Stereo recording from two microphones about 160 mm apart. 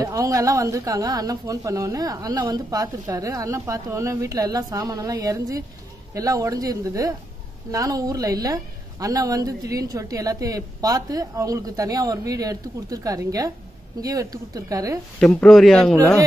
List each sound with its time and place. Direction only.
0.0 s speech: 20° right (ahead or behind)
15.1 s speech: 5° left (ahead or behind)